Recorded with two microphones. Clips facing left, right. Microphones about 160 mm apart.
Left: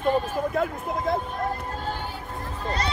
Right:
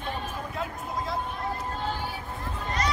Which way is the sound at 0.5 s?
55° left (ahead or behind).